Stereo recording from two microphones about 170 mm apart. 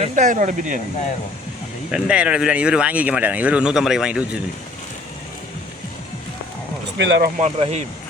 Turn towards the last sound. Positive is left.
turn(degrees=-40)  # may be behind; listen again after turning